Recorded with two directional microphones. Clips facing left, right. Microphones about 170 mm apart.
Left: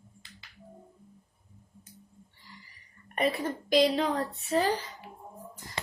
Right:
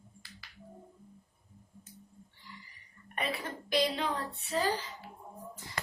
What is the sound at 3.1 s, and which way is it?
A woman's voice, 40° left (ahead or behind).